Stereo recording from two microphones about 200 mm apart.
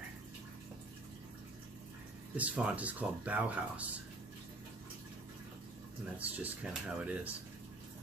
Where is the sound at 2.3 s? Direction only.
5° right (ahead or behind).